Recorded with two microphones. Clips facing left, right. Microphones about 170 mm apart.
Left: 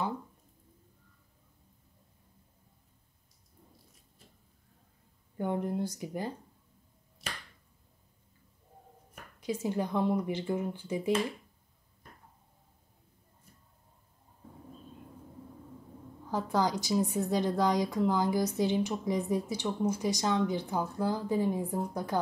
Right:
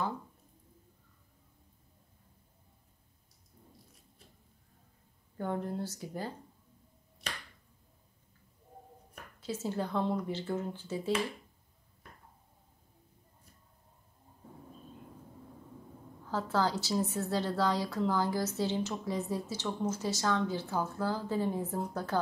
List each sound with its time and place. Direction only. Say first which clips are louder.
5.4 s a woman's voice: left 3 dB; 15° left (ahead or behind)
9.1 s a woman's voice: left 4 dB; 15° left (ahead or behind)
16.3 s a woman's voice: left 2 dB; 15° left (ahead or behind)